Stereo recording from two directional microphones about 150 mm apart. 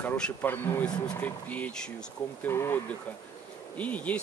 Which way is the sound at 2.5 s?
15° left (ahead or behind).